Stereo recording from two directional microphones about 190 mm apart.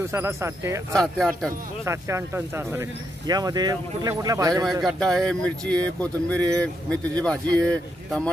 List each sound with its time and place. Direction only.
0.1 s speech: 15° right (ahead or behind)
0.9 s speech: centre (ahead or behind)
1.9 s speech: 15° right (ahead or behind)
4.8 s speech: centre (ahead or behind)